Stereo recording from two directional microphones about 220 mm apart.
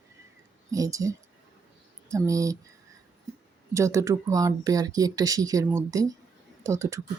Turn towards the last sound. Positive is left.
turn(degrees=-15)  # may be behind; listen again after turning